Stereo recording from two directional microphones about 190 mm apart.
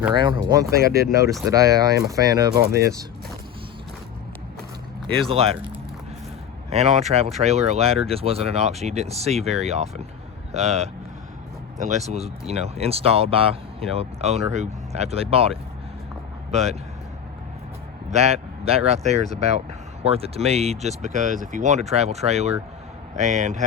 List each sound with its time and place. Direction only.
0.1 s speech: 25° right (ahead or behind)
5.3 s speech: 30° right (ahead or behind)
6.7 s speech: 35° right (ahead or behind)
18.1 s speech: 35° right (ahead or behind)